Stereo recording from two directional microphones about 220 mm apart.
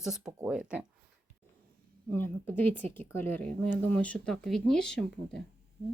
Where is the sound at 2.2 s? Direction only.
10° left (ahead or behind).